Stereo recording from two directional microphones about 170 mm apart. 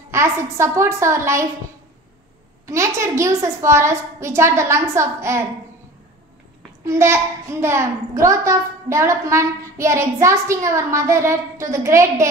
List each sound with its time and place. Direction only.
0.1 s a woman's voice: 15° right (ahead or behind)
2.6 s a woman's voice: 15° right (ahead or behind)
6.8 s a child's voice: 15° right (ahead or behind)